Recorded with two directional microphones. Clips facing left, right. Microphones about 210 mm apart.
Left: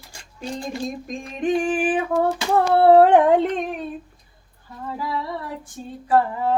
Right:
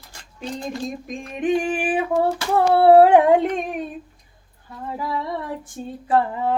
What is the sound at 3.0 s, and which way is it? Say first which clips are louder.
Speech: right 1 dB; 10° right (ahead or behind).